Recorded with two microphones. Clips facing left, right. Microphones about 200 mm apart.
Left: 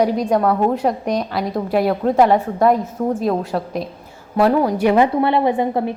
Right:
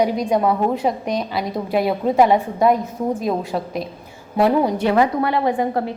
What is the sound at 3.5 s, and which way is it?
Speech, 5° right (ahead or behind).